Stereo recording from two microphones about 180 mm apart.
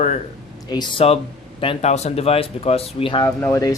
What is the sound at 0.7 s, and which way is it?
Speech, 25° left (ahead or behind).